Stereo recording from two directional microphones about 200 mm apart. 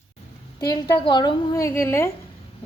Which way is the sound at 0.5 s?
20° left (ahead or behind).